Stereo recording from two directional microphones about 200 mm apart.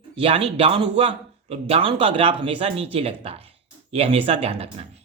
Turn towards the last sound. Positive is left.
turn(degrees=-30)  # may be behind; listen again after turning